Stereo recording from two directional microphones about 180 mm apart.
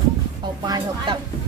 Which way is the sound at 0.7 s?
20° right (ahead or behind).